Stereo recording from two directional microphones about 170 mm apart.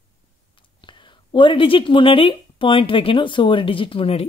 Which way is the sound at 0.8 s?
30° left (ahead or behind).